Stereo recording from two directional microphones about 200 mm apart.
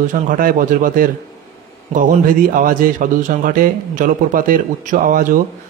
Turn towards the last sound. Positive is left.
turn(degrees=-45)  # may be behind; listen again after turning